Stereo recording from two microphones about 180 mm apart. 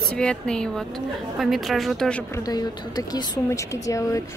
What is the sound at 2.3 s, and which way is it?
Speech, 20° left (ahead or behind).